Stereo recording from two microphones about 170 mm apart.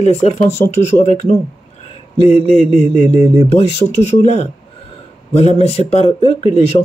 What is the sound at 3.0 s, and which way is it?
Speech, 40° left (ahead or behind).